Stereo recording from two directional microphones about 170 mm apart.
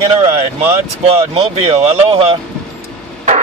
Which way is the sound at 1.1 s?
40° right (ahead or behind).